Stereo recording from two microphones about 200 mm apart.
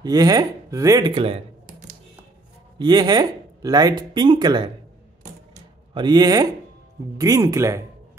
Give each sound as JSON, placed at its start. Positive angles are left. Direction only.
{"t": 0.0, "sound": "speech", "side_deg": -20}
{"t": 2.8, "sound": "speech", "side_deg": -20}
{"t": 5.9, "sound": "speech", "side_deg": -20}